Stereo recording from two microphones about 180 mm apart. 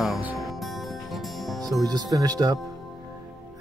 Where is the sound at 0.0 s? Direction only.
5° right (ahead or behind).